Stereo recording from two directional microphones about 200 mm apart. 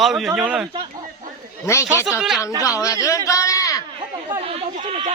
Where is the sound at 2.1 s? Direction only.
Centre (ahead or behind).